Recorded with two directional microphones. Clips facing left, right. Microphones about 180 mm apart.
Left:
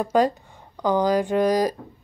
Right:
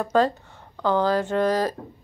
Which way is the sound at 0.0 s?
15° left (ahead or behind).